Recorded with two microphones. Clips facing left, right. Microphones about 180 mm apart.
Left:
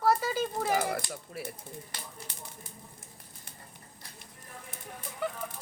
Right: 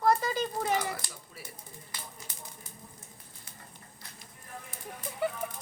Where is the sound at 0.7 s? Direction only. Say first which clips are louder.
Left 2 dB; 55° left (ahead or behind).